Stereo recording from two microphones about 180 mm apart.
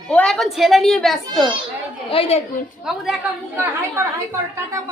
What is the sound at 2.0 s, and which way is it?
Speech, 30° left (ahead or behind).